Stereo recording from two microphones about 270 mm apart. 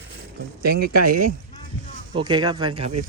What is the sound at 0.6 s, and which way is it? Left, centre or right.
Speech, right.